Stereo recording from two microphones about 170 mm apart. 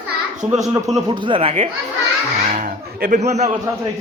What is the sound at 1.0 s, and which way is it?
Speech, 25° right (ahead or behind).